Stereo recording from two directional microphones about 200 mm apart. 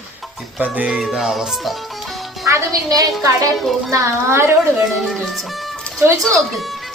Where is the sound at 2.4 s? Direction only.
15° right (ahead or behind).